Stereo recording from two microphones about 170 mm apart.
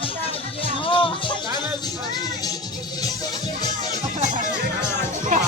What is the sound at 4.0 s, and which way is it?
Music, 45° right (ahead or behind).